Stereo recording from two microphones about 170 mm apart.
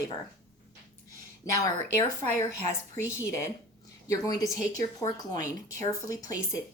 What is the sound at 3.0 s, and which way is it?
Speech, 10° right (ahead or behind).